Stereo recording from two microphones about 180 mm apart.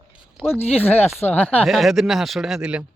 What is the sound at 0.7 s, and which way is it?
Speech, 10° left (ahead or behind).